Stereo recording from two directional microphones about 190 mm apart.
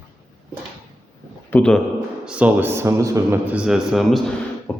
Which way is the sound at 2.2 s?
5° right (ahead or behind).